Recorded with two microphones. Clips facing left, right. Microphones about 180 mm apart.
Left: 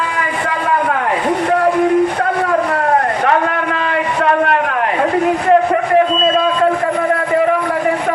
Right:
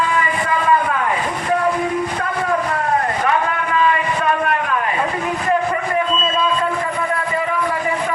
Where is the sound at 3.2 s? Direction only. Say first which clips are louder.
Left 4 dB; 70° left (ahead or behind).